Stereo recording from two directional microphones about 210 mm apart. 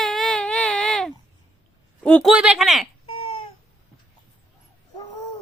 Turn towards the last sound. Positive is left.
turn(degrees=25)  # may be behind; listen again after turning